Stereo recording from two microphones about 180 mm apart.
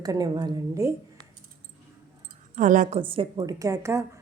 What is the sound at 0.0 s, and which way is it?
A woman's voice, 20° right (ahead or behind).